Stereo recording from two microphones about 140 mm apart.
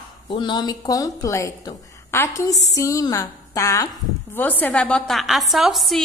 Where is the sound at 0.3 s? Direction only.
35° left (ahead or behind).